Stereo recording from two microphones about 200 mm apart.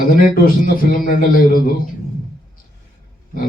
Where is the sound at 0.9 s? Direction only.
45° left (ahead or behind).